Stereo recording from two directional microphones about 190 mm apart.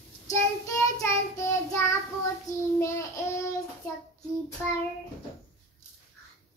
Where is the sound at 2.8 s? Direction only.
15° left (ahead or behind).